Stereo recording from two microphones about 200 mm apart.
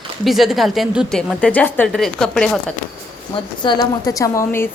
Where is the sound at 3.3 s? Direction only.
25° left (ahead or behind).